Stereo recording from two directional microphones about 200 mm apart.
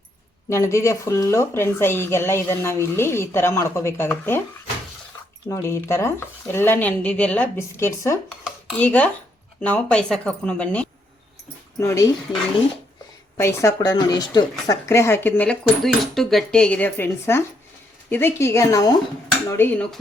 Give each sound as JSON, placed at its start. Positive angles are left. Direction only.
{"t": 0.5, "sound": "a woman's voice", "side_deg": 15}
{"t": 5.5, "sound": "a woman's voice", "side_deg": 15}
{"t": 13.3, "sound": "a woman's voice", "side_deg": 15}